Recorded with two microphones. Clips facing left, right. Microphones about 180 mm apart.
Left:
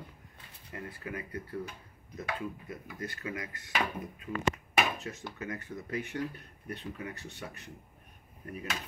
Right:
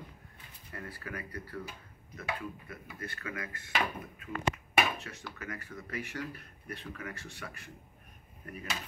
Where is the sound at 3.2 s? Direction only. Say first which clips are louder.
Left 1 dB; 15° left (ahead or behind).